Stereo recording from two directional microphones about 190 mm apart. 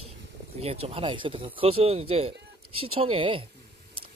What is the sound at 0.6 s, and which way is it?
Speech, 30° right (ahead or behind).